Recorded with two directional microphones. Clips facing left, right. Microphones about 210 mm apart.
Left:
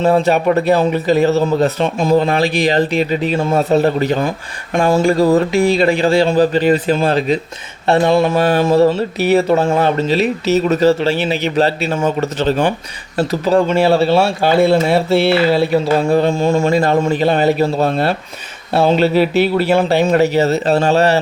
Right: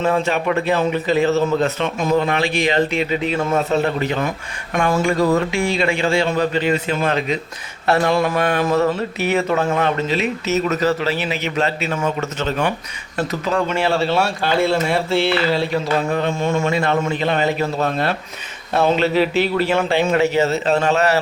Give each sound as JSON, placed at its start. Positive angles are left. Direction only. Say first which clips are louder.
{"t": 0.0, "sound": "speech", "louder": "left 6 dB", "side_deg": 35}